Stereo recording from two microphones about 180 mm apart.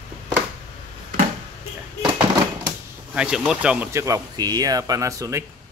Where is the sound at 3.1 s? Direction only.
5° right (ahead or behind).